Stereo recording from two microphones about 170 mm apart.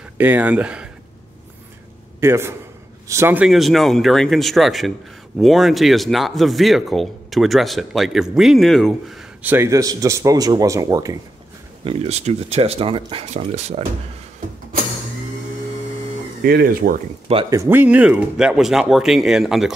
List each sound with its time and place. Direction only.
0.2 s speech: 10° right (ahead or behind)
2.1 s a man's voice: 15° right (ahead or behind); by 9.2 s centre (ahead or behind)
9.4 s a man's voice: 15° right (ahead or behind)
11.8 s speech: 35° right (ahead or behind)
16.4 s speech: 60° right (ahead or behind)
17.5 s speech: 15° right (ahead or behind)